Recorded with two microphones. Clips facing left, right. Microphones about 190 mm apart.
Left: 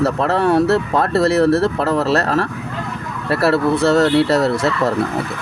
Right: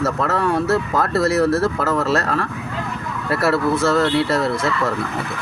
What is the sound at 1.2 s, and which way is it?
Speech, 60° left (ahead or behind).